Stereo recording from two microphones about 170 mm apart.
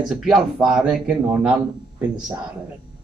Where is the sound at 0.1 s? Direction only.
5° right (ahead or behind).